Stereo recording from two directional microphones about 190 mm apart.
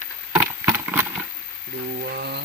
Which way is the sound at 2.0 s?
60° right (ahead or behind).